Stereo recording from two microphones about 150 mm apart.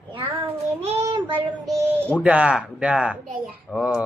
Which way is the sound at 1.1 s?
35° right (ahead or behind).